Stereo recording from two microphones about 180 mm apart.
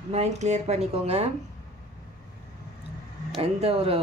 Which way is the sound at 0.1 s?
40° right (ahead or behind).